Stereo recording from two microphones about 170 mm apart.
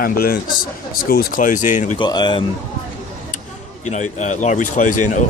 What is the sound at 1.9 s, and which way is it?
Speech, 25° left (ahead or behind).